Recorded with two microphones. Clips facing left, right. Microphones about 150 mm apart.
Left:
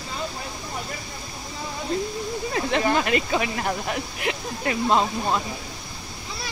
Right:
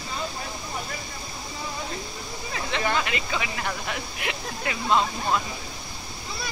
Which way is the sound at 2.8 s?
40° left (ahead or behind).